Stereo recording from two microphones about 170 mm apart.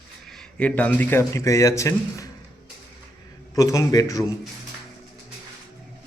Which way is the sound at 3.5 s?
20° left (ahead or behind).